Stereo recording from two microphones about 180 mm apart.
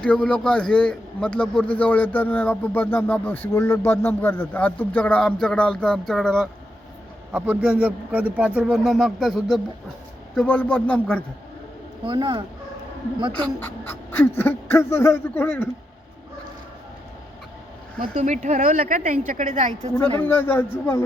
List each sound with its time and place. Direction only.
0.0 s a man's voice: 5° left (ahead or behind)
12.0 s speech: 25° right (ahead or behind)
13.4 s a man's voice: 10° left (ahead or behind)
18.0 s speech: 40° right (ahead or behind)
20.1 s a man's voice: 10° left (ahead or behind)